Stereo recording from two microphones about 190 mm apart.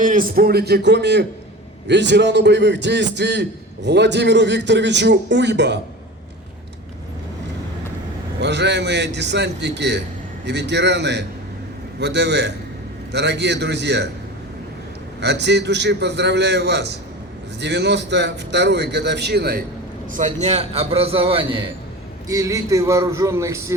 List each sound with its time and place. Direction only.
0.0 s a man's voice: 45° right (ahead or behind); by 5.8 s 65° right (ahead or behind)
8.4 s a man's voice: 65° right (ahead or behind)
15.2 s a man's voice: 65° right (ahead or behind)
20.1 s a man's voice: 40° right (ahead or behind)
22.3 s speech: 15° right (ahead or behind)